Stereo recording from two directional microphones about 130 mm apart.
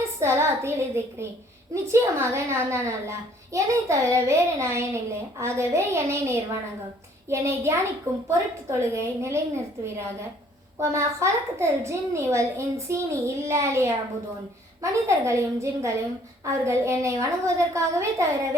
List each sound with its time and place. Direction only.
0.2 s a child's voice: 20° right (ahead or behind)
10.8 s a child's voice: 20° right (ahead or behind)